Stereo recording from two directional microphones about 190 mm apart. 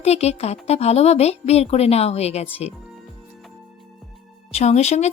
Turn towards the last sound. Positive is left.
turn(degrees=35)  # may be behind; listen again after turning